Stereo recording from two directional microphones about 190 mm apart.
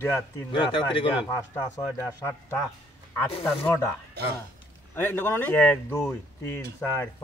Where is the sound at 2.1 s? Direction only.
15° left (ahead or behind).